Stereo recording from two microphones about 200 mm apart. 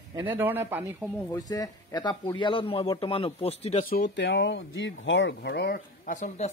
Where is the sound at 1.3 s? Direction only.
15° left (ahead or behind).